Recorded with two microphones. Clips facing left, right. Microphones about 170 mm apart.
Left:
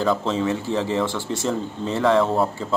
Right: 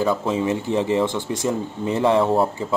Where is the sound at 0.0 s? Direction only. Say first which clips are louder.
Right 1 dB; 10° right (ahead or behind).